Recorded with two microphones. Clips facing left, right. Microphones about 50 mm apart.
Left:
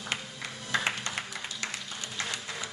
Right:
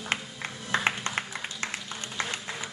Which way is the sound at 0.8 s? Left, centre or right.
Right.